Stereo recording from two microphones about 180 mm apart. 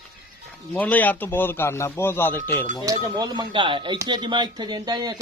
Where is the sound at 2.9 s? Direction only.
25° right (ahead or behind).